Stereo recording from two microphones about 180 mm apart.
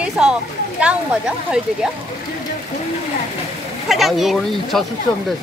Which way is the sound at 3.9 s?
Centre (ahead or behind).